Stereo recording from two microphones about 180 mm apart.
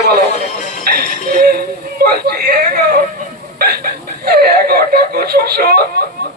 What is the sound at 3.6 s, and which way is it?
Speech, 60° right (ahead or behind).